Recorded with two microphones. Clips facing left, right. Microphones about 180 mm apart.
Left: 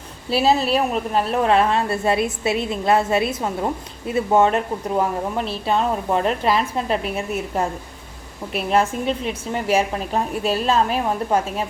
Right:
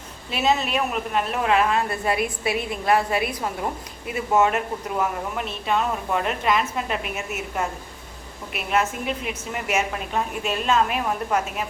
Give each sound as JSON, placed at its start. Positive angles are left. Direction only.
{"t": 0.3, "sound": "a woman's voice", "side_deg": 35}